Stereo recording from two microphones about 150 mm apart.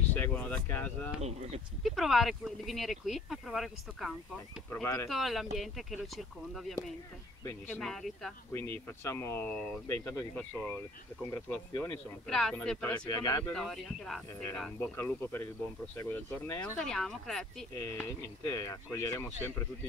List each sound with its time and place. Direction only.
0.1 s speech: 10° left (ahead or behind)
1.2 s speech: 45° right (ahead or behind)
1.8 s speech: centre (ahead or behind)
7.4 s speech: 15° left (ahead or behind)
7.8 s speech: centre (ahead or behind)
8.5 s speech: 15° left (ahead or behind)
12.3 s speech: 5° left (ahead or behind)
12.9 s speech: 25° left (ahead or behind)
13.4 s speech: 5° left (ahead or behind)
16.7 s speech: 5° left (ahead or behind)
18.5 s speech: 20° left (ahead or behind)